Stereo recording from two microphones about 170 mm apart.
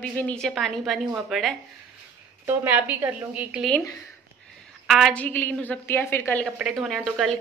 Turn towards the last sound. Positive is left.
turn(degrees=0)  # may be behind; listen again after turning